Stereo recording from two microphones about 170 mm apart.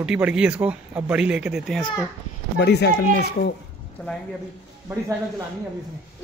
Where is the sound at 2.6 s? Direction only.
85° left.